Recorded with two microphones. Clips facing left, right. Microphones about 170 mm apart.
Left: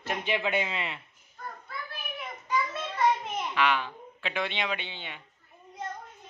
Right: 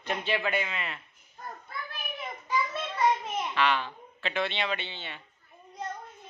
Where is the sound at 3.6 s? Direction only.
10° left (ahead or behind).